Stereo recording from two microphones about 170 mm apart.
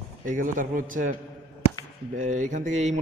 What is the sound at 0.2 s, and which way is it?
Speech, 50° right (ahead or behind).